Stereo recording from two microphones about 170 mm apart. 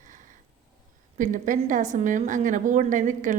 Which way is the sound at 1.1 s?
50° right (ahead or behind).